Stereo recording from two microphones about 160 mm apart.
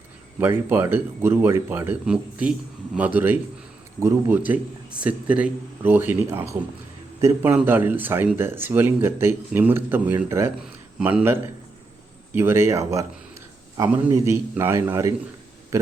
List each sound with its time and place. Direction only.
0.3 s a man's voice: 10° right (ahead or behind)